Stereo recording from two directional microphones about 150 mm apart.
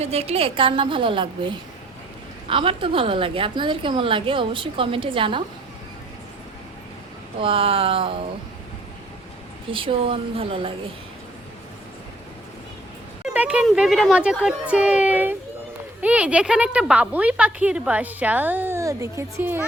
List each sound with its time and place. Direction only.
0.0 s a woman's voice: 45° right (ahead or behind)
7.4 s a woman's voice: 35° right (ahead or behind)
9.7 s a woman's voice: 35° right (ahead or behind)
13.2 s a sound: 10° right (ahead or behind)
13.7 s speech: centre (ahead or behind)